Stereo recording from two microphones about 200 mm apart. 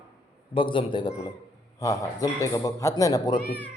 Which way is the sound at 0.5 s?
25° left (ahead or behind).